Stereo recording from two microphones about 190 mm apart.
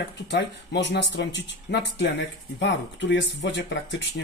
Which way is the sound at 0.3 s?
65° left (ahead or behind).